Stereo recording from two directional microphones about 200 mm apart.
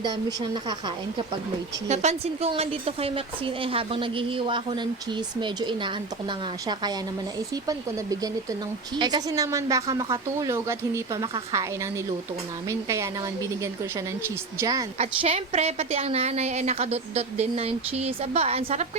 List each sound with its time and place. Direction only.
0.0 s a woman's voice: 20° right (ahead or behind)
1.9 s a woman's voice: 35° right (ahead or behind); by 14.8 s 20° right (ahead or behind)
14.9 s a woman's voice: 30° right (ahead or behind)